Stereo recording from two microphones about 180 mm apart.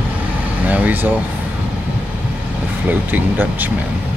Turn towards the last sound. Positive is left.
turn(degrees=-10)  # may be behind; listen again after turning